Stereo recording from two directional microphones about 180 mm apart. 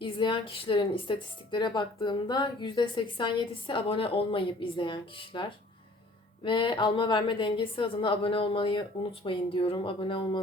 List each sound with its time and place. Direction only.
0.0 s a woman's voice: 25° left (ahead or behind)